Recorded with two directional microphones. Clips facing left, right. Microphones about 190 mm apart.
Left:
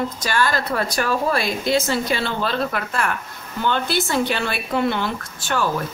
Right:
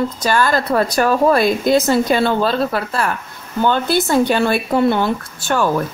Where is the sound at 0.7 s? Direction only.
45° right (ahead or behind).